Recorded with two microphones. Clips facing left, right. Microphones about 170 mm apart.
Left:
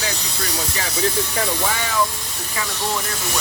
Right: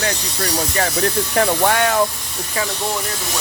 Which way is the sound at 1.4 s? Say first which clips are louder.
Right 11 dB; 60° right (ahead or behind).